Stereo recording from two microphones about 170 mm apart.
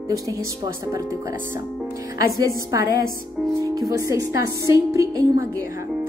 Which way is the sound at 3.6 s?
20° right (ahead or behind).